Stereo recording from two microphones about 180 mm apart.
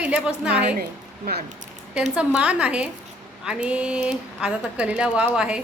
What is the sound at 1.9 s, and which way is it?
A woman's voice, 5° right (ahead or behind).